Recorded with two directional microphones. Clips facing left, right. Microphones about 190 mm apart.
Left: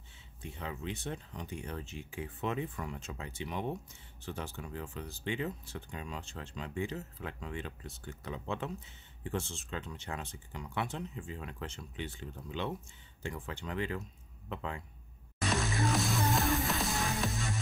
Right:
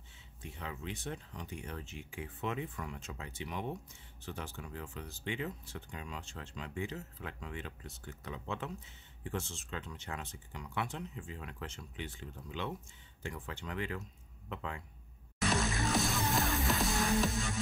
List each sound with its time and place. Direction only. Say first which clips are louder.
0.4 s speech: left 3 dB; 25° left (ahead or behind)
15.4 s music: left 1 dB; centre (ahead or behind)